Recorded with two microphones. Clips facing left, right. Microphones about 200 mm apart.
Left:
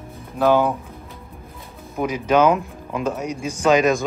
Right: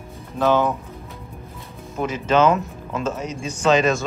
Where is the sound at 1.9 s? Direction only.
15° left (ahead or behind).